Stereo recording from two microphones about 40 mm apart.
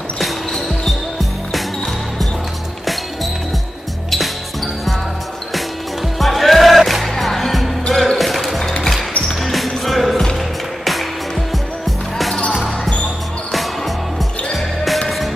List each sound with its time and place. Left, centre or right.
6.1 s music: centre
12.4 s basketball bounce: left
13.5 s music: centre